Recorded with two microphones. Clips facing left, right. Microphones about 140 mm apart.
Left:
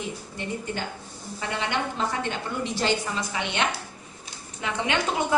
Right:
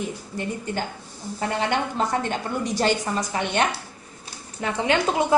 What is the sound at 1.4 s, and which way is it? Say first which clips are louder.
A woman's voice: right 4 dB; 40° right (ahead or behind).